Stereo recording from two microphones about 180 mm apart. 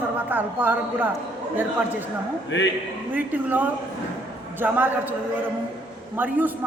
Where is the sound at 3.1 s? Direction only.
10° right (ahead or behind).